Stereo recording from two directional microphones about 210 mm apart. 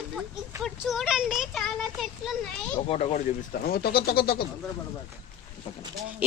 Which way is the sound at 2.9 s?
30° left (ahead or behind).